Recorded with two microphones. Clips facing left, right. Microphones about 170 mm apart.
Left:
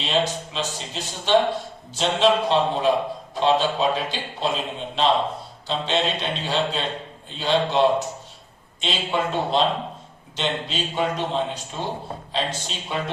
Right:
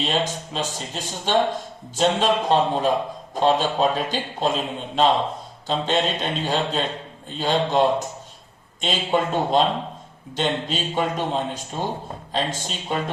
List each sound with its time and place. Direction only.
0.0 s a man's voice: 45° right (ahead or behind)